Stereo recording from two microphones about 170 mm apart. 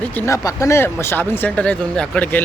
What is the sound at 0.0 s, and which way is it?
Speech, 10° left (ahead or behind).